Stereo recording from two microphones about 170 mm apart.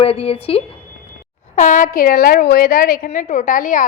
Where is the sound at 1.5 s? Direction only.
50° left (ahead or behind).